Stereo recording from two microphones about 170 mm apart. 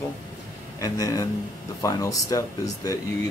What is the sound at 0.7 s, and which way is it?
Speech, 20° left (ahead or behind).